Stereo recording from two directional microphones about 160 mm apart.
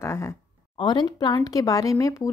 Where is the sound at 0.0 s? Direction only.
15° left (ahead or behind).